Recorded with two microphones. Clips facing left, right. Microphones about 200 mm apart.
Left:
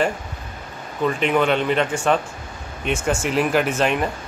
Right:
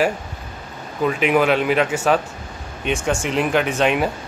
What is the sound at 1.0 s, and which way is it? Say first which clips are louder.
Speech: right 2 dB; 5° right (ahead or behind).